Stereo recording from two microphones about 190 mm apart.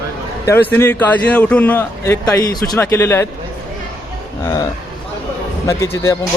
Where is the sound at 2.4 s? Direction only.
20° left (ahead or behind).